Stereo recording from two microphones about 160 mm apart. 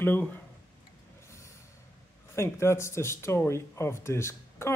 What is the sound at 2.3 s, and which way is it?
Speech, 15° left (ahead or behind).